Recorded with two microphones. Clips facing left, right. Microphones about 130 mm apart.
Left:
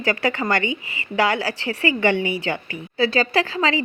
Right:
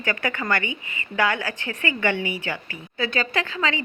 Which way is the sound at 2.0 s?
15° left (ahead or behind).